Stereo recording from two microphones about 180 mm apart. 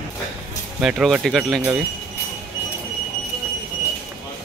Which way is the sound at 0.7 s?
5° right (ahead or behind).